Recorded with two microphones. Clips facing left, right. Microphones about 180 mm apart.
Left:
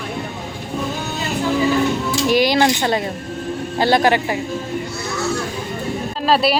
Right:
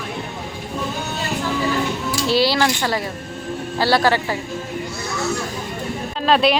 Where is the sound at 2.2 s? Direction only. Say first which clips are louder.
Left 2 dB; 15° left (ahead or behind).